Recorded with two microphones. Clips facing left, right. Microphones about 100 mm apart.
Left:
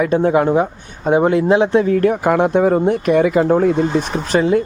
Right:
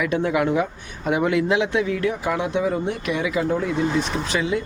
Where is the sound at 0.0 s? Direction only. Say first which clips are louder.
Left 7 dB; 35° left (ahead or behind).